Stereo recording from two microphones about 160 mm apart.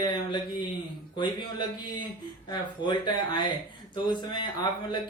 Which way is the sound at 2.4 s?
30° left (ahead or behind).